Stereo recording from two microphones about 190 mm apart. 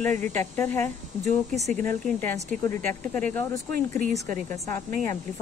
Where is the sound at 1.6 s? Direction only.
40° right (ahead or behind).